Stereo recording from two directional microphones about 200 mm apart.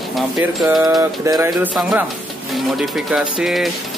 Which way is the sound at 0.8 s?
15° right (ahead or behind).